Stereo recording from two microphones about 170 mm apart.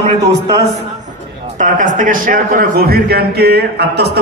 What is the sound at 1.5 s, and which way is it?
A man's voice, 50° right (ahead or behind).